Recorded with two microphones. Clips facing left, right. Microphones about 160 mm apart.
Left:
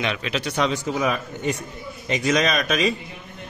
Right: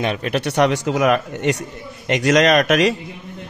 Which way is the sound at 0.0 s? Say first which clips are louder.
Right 5 dB; 45° right (ahead or behind).